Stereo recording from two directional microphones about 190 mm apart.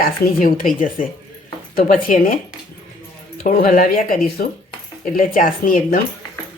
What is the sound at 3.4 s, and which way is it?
Speech, 50° left (ahead or behind).